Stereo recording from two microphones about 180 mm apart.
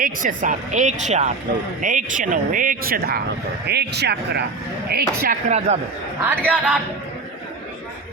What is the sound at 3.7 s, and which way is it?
Speech, 65° right (ahead or behind).